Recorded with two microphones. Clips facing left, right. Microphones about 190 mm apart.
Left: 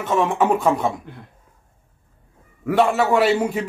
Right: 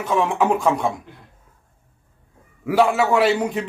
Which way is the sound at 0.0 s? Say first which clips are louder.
Left 1 dB; centre (ahead or behind).